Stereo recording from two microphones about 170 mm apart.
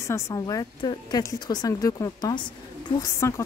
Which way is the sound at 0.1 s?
20° left (ahead or behind).